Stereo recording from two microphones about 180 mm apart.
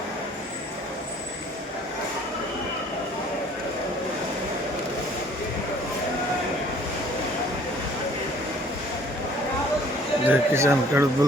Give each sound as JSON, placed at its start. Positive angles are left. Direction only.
{"t": 10.2, "sound": "speech", "side_deg": -15}